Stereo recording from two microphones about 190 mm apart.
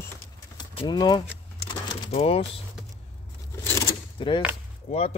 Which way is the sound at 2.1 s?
35° left (ahead or behind).